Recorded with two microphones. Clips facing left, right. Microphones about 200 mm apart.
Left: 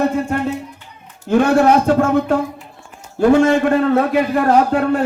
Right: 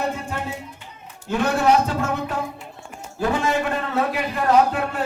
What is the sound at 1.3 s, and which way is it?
Speech, 55° left (ahead or behind).